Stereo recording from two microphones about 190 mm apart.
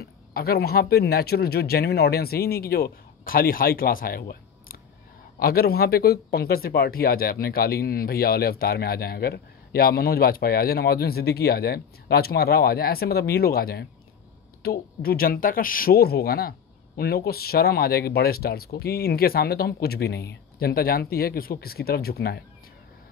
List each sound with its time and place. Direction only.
0.0 s speech: 55° left (ahead or behind)